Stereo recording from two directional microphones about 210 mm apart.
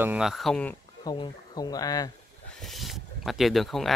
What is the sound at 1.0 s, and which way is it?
Speech, 20° left (ahead or behind).